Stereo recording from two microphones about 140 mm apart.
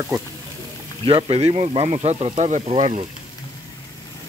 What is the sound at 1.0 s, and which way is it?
Speech, 40° right (ahead or behind).